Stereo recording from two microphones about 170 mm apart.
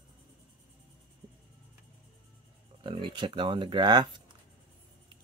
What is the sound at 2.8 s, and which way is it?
Speech, 30° right (ahead or behind).